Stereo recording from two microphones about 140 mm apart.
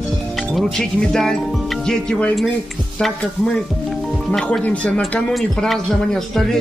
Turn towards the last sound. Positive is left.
turn(degrees=0)  # may be behind; listen again after turning